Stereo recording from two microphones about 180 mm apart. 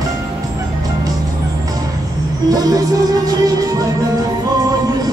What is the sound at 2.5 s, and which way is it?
Speech, 20° right (ahead or behind).